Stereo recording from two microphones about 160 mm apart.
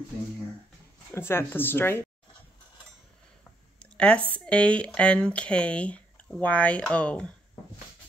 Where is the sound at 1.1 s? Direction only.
15° left (ahead or behind).